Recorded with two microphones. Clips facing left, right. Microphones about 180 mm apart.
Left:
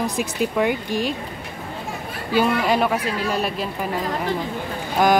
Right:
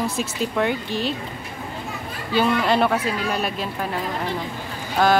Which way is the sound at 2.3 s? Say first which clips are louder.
Even; 10° left (ahead or behind).